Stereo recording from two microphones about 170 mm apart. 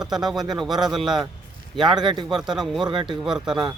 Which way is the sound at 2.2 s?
5° right (ahead or behind).